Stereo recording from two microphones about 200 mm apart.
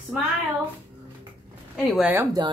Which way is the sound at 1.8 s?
5° right (ahead or behind).